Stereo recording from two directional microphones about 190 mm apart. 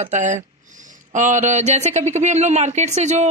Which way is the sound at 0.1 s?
40° right (ahead or behind).